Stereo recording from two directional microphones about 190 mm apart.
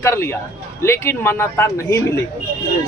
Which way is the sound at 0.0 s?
15° left (ahead or behind).